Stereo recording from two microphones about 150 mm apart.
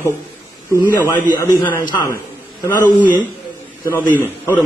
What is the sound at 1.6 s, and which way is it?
Speech, 15° left (ahead or behind).